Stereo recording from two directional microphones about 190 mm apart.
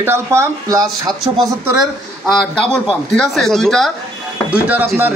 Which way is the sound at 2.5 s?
5° left (ahead or behind).